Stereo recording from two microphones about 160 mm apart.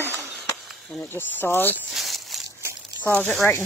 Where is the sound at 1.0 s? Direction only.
15° left (ahead or behind).